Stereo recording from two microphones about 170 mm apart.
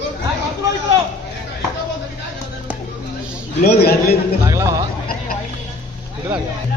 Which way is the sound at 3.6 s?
65° left (ahead or behind).